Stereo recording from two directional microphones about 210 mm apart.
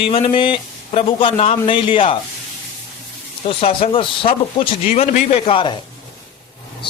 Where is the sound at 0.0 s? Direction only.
25° left (ahead or behind).